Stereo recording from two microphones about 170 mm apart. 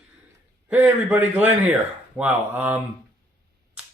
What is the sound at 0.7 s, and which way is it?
A man's voice, 10° right (ahead or behind).